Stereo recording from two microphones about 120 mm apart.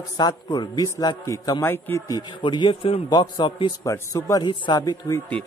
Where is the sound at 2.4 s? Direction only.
40° left (ahead or behind).